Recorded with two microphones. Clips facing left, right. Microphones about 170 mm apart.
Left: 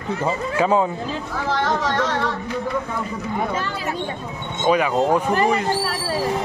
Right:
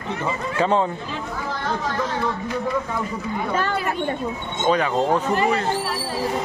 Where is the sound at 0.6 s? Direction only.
10° left (ahead or behind).